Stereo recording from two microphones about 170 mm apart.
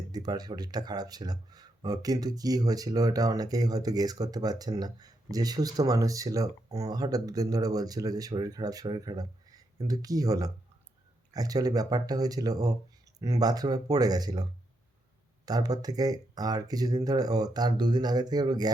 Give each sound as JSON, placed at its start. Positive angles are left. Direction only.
{"t": 0.1, "sound": "speech", "side_deg": -25}
{"t": 15.4, "sound": "speech", "side_deg": -20}